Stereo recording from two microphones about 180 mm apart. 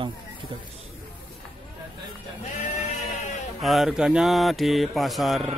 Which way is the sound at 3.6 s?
Centre (ahead or behind).